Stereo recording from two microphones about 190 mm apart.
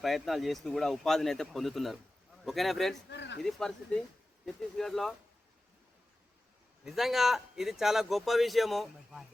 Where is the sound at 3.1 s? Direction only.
65° left (ahead or behind).